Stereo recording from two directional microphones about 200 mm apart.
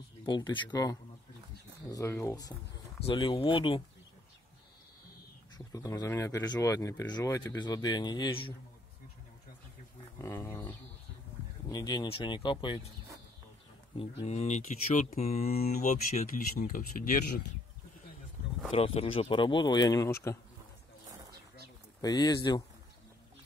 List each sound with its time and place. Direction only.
0.3 s speech: 25° left (ahead or behind)
3.0 s speech: 30° left (ahead or behind)
5.7 s speech: 15° left (ahead or behind)
10.2 s a sound: 10° left (ahead or behind)
11.7 s speech: 20° left (ahead or behind)
13.9 s speech: 30° left (ahead or behind)
15.4 s speech: 50° left (ahead or behind)
18.7 s speech: 30° left (ahead or behind)
22.0 s speech: 20° left (ahead or behind)